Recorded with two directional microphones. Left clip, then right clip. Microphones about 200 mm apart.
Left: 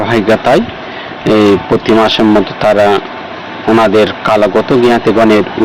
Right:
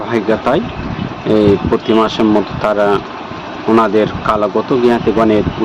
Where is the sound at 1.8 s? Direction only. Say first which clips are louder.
Left 5 dB; 20° left (ahead or behind).